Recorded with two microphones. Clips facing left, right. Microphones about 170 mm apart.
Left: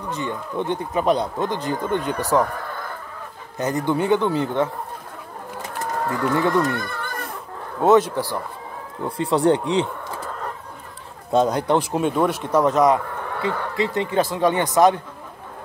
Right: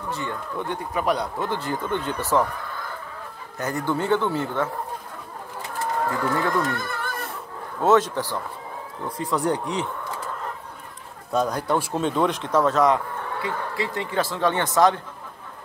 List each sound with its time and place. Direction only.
0.1 s speech: 20° left (ahead or behind)
3.5 s speech: 20° left (ahead or behind)
6.5 s speech: 5° right (ahead or behind)
7.8 s speech: 10° left (ahead or behind)
9.1 s speech: 30° left (ahead or behind)
11.3 s speech: 20° left (ahead or behind)